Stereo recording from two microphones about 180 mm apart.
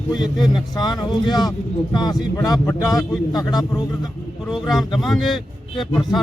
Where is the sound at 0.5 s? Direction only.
25° left (ahead or behind).